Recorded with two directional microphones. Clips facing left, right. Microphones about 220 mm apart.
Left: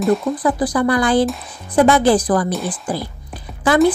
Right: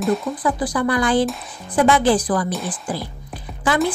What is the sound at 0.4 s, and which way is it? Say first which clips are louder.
Speech: left 4 dB; 35° left (ahead or behind).